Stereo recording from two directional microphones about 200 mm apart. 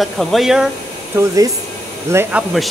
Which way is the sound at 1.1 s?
15° right (ahead or behind).